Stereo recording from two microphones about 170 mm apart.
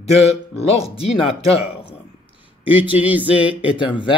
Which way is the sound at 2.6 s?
30° left (ahead or behind).